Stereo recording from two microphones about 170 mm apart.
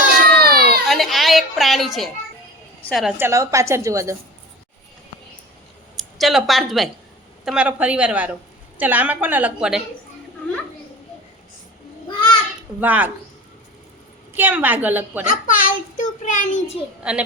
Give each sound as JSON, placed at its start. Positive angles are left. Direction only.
{"t": 0.3, "sound": "baby cry", "side_deg": -65}
{"t": 0.9, "sound": "a sound", "side_deg": 0}
{"t": 2.9, "sound": "a woman's voice", "side_deg": 0}
{"t": 3.2, "sound": "a woman's voice", "side_deg": -15}
{"t": 6.0, "sound": "a woman's voice", "side_deg": 0}
{"t": 12.0, "sound": "a sound", "side_deg": 25}
{"t": 12.8, "sound": "a woman's voice", "side_deg": -10}
{"t": 14.3, "sound": "a woman's voice", "side_deg": -10}
{"t": 15.3, "sound": "a child's voice", "side_deg": 55}
{"t": 17.0, "sound": "a woman's voice", "side_deg": -5}